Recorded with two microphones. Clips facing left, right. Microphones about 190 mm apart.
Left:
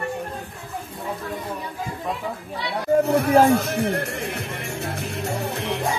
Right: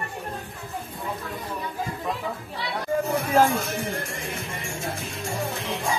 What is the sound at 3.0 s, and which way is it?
Music, 65° left (ahead or behind).